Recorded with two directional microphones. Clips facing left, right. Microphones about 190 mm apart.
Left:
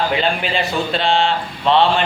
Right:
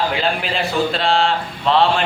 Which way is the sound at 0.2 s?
Centre (ahead or behind).